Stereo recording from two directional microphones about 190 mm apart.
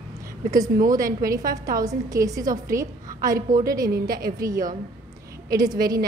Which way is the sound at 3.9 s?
50° right (ahead or behind).